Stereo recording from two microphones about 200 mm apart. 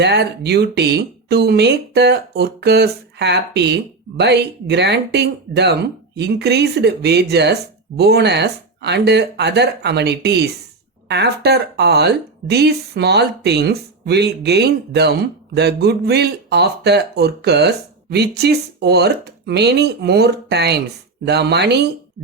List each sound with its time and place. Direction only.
0.0 s speech: 55° right (ahead or behind)